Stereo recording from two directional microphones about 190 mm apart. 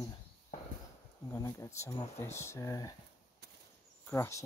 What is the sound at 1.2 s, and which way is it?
Speech, 15° left (ahead or behind).